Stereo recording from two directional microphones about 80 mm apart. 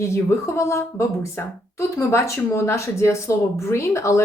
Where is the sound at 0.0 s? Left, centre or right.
Left.